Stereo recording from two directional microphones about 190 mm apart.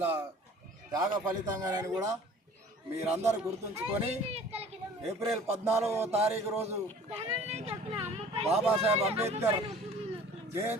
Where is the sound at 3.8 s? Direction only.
30° right (ahead or behind).